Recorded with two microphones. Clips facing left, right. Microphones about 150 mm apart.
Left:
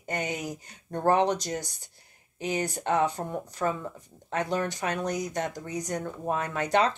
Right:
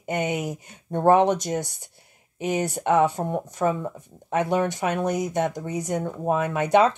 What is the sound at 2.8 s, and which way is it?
Speech, 55° right (ahead or behind).